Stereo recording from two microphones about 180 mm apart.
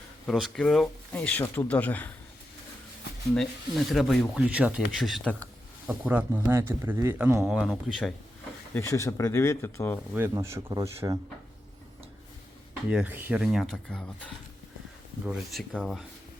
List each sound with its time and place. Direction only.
0.3 s speech: centre (ahead or behind)
3.3 s speech: centre (ahead or behind)
5.9 s speech: 10° right (ahead or behind)
7.4 s speech: centre (ahead or behind)
8.7 s speech: 15° left (ahead or behind)
10.2 s speech: 15° right (ahead or behind)
12.9 s speech: 10° right (ahead or behind)